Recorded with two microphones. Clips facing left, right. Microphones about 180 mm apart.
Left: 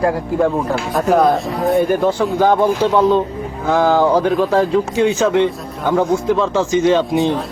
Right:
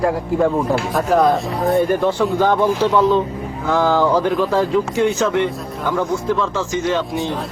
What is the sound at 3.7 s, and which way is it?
Speech, 15° left (ahead or behind).